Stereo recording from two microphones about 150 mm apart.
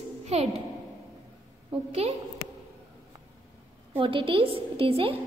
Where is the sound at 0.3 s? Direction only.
45° right (ahead or behind).